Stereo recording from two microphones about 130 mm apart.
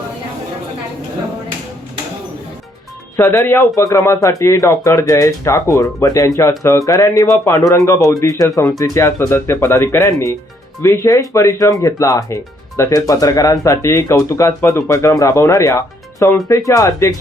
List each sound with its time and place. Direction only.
3.2 s speech: 20° left (ahead or behind)